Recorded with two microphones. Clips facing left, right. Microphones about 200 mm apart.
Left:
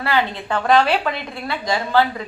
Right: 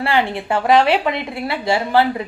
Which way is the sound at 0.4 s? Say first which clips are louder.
Right 2 dB; 25° right (ahead or behind).